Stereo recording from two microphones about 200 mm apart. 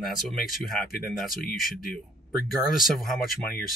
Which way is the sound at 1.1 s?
Centre (ahead or behind).